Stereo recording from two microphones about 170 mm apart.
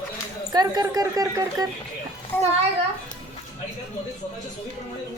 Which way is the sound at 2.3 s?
10° left (ahead or behind).